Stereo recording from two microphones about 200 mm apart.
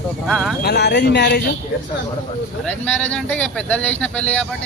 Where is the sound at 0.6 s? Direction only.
55° left (ahead or behind).